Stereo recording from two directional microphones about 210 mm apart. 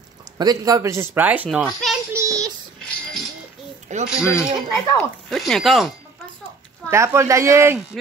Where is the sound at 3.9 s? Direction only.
35° right (ahead or behind).